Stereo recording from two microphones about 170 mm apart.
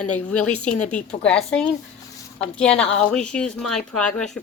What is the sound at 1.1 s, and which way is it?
Speech, 35° left (ahead or behind).